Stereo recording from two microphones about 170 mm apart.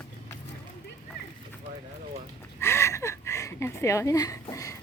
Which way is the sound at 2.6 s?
15° left (ahead or behind).